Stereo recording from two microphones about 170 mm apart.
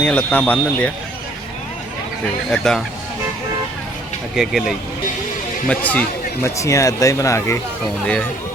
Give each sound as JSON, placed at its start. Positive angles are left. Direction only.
{"t": 0.0, "sound": "speech", "side_deg": 10}
{"t": 2.5, "sound": "speech", "side_deg": 0}
{"t": 4.4, "sound": "speech", "side_deg": 0}
{"t": 5.6, "sound": "speech", "side_deg": 10}